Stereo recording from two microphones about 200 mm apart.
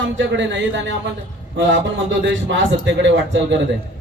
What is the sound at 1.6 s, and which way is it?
Speech, 65° right (ahead or behind).